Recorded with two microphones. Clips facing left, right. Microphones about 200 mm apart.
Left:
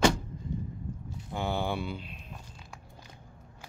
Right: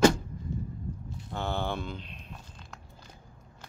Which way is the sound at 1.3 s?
10° left (ahead or behind).